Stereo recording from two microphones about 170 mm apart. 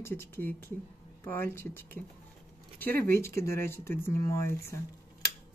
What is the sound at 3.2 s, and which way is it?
Speech, 15° left (ahead or behind).